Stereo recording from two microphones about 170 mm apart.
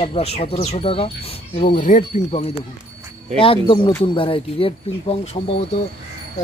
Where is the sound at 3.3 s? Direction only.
30° left (ahead or behind).